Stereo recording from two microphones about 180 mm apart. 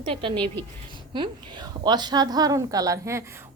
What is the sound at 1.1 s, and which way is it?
A woman's voice, 25° right (ahead or behind).